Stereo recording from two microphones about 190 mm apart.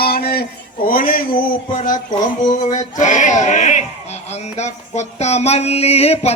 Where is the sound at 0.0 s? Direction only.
55° left (ahead or behind).